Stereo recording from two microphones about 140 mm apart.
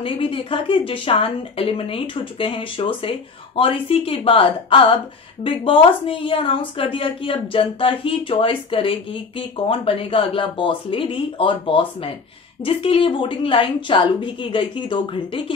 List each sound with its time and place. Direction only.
0.0 s a woman's voice: 40° left (ahead or behind)